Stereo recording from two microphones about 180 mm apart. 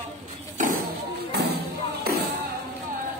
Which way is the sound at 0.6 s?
45° right (ahead or behind).